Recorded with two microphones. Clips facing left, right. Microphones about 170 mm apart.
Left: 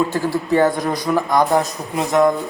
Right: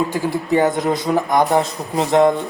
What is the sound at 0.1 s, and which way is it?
Speech, 15° right (ahead or behind).